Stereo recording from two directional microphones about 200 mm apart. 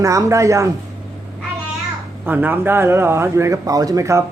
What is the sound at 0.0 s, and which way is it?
Speech, 15° right (ahead or behind).